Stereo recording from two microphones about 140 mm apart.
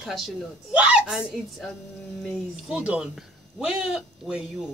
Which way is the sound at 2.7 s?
10° right (ahead or behind).